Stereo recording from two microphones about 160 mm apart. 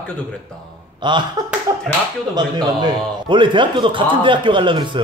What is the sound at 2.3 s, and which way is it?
A man's voice, 25° right (ahead or behind).